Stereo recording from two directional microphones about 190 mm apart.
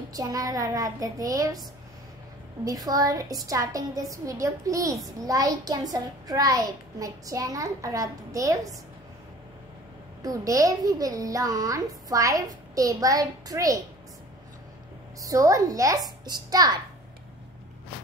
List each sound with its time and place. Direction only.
0.1 s a child's voice: 20° right (ahead or behind)
2.7 s a child's voice: 20° right (ahead or behind)
10.2 s a child's voice: 20° right (ahead or behind)
15.2 s a child's voice: 15° right (ahead or behind)